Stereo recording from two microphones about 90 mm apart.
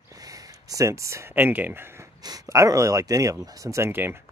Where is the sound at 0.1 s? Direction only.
45° right (ahead or behind); by 2.0 s 25° right (ahead or behind).